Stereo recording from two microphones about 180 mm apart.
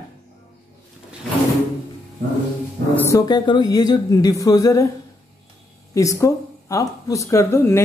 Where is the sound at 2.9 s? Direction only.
15° left (ahead or behind).